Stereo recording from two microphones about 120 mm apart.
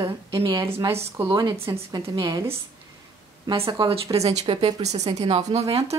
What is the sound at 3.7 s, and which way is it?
Speech, 40° right (ahead or behind).